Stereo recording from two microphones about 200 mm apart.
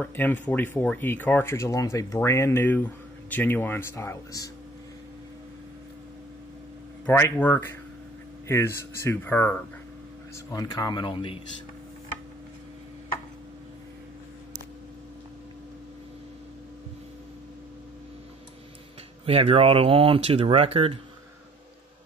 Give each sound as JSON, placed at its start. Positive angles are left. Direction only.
{"t": 0.0, "sound": "speech", "side_deg": 10}
{"t": 7.1, "sound": "speech", "side_deg": 10}
{"t": 19.2, "sound": "speech", "side_deg": -30}